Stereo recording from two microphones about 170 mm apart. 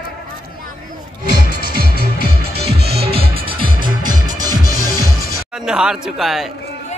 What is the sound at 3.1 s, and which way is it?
Music, 35° right (ahead or behind).